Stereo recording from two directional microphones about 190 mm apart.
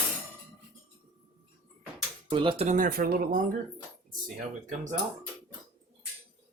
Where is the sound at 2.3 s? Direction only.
25° right (ahead or behind).